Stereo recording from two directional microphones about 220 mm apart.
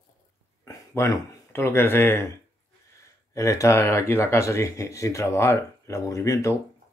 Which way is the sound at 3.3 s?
15° left (ahead or behind).